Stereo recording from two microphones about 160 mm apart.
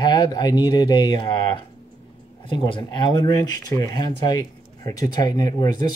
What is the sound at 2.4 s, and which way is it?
Speech, 30° left (ahead or behind).